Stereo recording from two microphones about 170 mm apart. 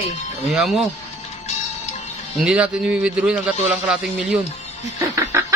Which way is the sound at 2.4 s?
5° right (ahead or behind).